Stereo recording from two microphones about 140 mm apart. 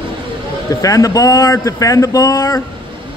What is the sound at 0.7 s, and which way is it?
Speech, 25° left (ahead or behind).